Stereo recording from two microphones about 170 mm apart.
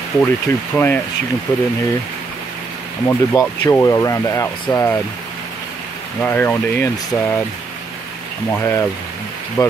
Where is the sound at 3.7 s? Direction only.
15° left (ahead or behind).